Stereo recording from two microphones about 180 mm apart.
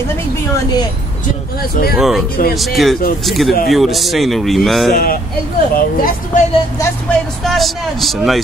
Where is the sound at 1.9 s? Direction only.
Centre (ahead or behind).